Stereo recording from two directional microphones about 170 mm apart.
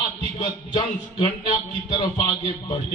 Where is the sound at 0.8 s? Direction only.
35° left (ahead or behind).